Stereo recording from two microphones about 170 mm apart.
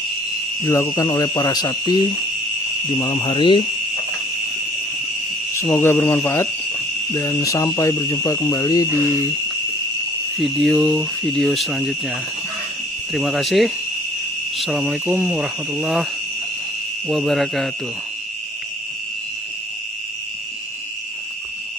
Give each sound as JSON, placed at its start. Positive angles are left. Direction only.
{"t": 0.7, "sound": "owl", "side_deg": 20}
{"t": 3.0, "sound": "speech", "side_deg": 25}
{"t": 5.6, "sound": "speech", "side_deg": 15}
{"t": 10.3, "sound": "speech", "side_deg": 0}
{"t": 13.1, "sound": "speech", "side_deg": 0}
{"t": 17.1, "sound": "speech", "side_deg": 0}